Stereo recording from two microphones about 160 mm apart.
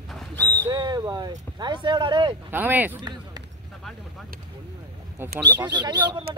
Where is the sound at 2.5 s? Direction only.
10° right (ahead or behind).